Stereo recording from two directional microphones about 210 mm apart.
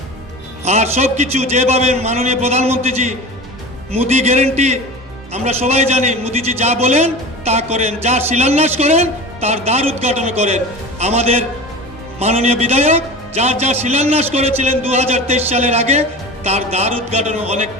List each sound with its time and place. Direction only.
0.6 s a man's voice: 30° right (ahead or behind)